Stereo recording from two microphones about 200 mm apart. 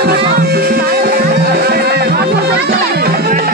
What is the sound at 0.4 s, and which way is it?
Music, 50° right (ahead or behind).